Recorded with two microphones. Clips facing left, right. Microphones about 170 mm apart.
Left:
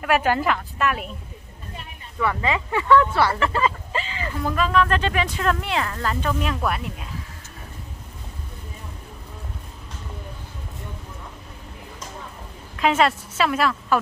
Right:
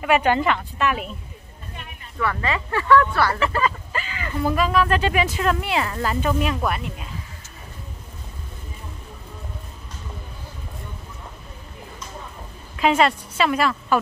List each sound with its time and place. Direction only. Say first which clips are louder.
0.0 s a woman's voice: right 2 dB; centre (ahead or behind)
2.1 s speech: left 1 dB; 15° left (ahead or behind)
3.3 s a woman's voice: even; centre (ahead or behind)
3.5 s a sound: even; 25° left (ahead or behind)
4.4 s speech: right 1 dB; 10° right (ahead or behind)
12.7 s a woman's voice: right 1 dB; centre (ahead or behind)